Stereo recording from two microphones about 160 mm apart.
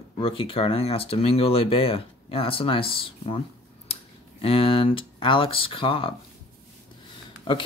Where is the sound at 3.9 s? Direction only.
35° left (ahead or behind).